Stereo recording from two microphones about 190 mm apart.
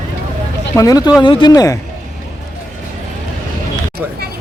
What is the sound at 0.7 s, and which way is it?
Speech, 20° left (ahead or behind).